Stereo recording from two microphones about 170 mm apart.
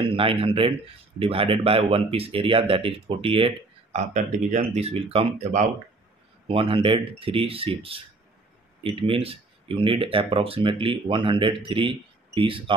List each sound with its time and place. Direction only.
0.1 s speech: 30° right (ahead or behind)
6.4 s speech: 35° right (ahead or behind)